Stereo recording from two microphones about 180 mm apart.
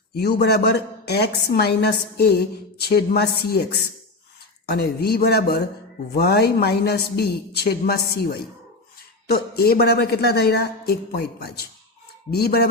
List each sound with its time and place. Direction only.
0.1 s a woman's voice: 65° left (ahead or behind)